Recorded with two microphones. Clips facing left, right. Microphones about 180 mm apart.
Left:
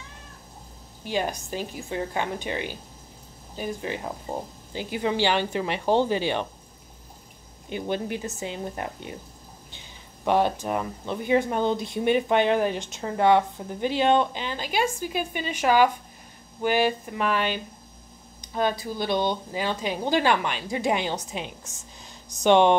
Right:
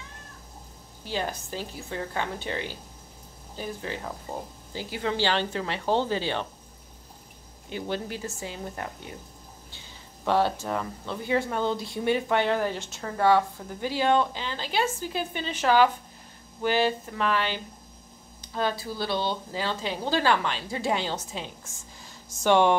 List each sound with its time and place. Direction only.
1.0 s speech: 15° left (ahead or behind)
7.7 s speech: 20° left (ahead or behind)